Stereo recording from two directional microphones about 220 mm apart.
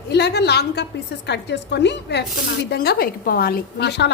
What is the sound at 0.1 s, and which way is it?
Speech, 50° left (ahead or behind).